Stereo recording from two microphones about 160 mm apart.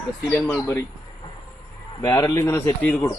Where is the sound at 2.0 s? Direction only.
20° left (ahead or behind).